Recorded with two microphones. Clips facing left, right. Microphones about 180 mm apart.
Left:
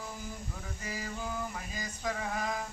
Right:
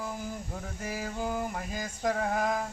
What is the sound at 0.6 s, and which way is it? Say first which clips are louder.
Mantra: right 4 dB; 55° right (ahead or behind).